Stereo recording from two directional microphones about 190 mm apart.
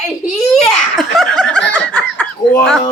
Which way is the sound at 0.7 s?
Centre (ahead or behind).